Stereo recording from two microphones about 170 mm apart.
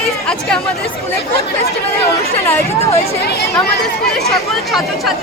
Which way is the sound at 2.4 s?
15° left (ahead or behind).